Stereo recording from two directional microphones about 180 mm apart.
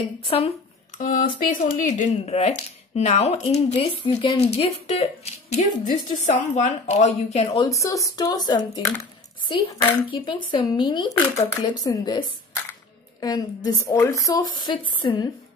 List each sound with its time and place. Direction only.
0.2 s speech: 30° left (ahead or behind)
0.9 s speech: 45° left (ahead or behind)
7.8 s speech: 20° left (ahead or behind)
10.0 s speech: 25° left (ahead or behind)